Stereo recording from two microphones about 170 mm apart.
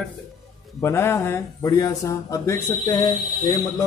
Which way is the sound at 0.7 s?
15° left (ahead or behind).